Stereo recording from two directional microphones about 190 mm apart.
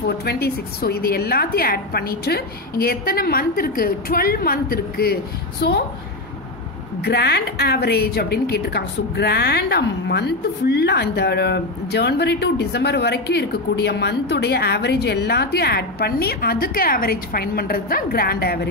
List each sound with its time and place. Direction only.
0.0 s a woman's voice: 55° left (ahead or behind)
5.6 s a woman's voice: 60° left (ahead or behind)
7.0 s a woman's voice: 60° left (ahead or behind)